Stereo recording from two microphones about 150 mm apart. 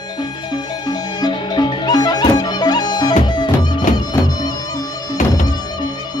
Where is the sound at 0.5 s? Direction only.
30° left (ahead or behind).